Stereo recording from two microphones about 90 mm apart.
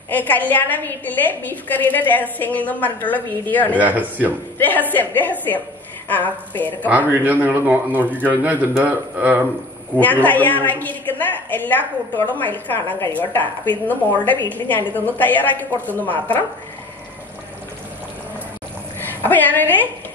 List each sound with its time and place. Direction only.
0.1 s a woman's voice: 20° left (ahead or behind)
3.7 s a man's voice: 20° right (ahead or behind)
4.6 s a woman's voice: 20° left (ahead or behind)
7.1 s a man's voice: 20° right (ahead or behind)
10.2 s a woman's voice: 20° left (ahead or behind)
18.9 s a woman's voice: 20° left (ahead or behind)